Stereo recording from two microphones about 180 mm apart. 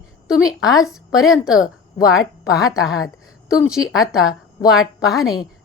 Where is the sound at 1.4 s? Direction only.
5° right (ahead or behind).